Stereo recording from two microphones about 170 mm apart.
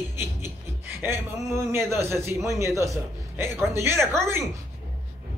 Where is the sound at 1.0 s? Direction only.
15° right (ahead or behind).